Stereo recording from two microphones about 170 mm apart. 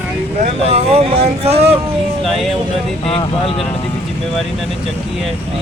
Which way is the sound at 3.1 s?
35° left (ahead or behind).